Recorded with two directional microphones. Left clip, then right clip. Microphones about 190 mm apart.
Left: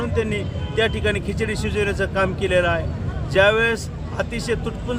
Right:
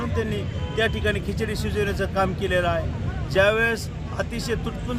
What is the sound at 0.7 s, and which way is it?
Speech, 45° left (ahead or behind).